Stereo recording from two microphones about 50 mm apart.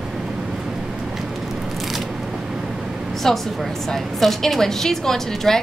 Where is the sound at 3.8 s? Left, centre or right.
Centre.